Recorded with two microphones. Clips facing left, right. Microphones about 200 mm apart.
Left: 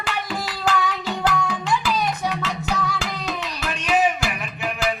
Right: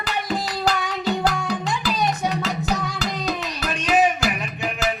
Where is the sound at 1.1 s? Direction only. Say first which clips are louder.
Right 3 dB; 40° right (ahead or behind).